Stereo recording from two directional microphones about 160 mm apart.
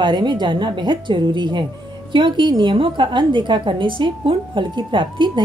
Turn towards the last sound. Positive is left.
turn(degrees=-30)  # may be behind; listen again after turning